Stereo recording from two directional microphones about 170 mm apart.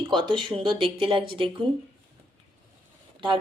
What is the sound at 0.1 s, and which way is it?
Speech, 30° right (ahead or behind).